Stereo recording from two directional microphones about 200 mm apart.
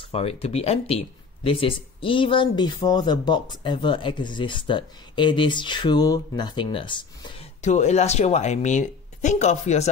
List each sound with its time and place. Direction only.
0.1 s speech: 30° left (ahead or behind)
7.6 s speech: 35° left (ahead or behind)